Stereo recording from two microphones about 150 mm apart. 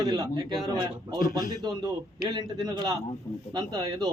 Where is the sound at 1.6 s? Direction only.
25° right (ahead or behind).